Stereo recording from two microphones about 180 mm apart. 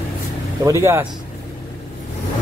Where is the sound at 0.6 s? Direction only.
15° right (ahead or behind).